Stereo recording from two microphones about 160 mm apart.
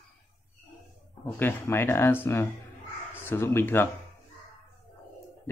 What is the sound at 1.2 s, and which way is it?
Speech, 15° left (ahead or behind).